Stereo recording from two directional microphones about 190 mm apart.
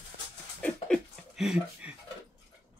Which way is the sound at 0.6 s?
Centre (ahead or behind).